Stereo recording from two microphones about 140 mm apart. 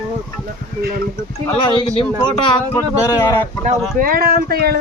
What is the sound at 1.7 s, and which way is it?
Speech, 35° left (ahead or behind).